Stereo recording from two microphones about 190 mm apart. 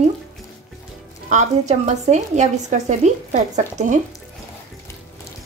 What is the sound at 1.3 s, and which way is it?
A woman's voice, 40° right (ahead or behind).